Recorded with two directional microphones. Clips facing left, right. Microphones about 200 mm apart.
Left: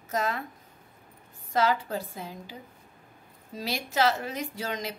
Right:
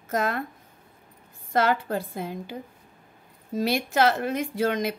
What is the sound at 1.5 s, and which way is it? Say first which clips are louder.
A woman's voice: right 3 dB; 55° right (ahead or behind).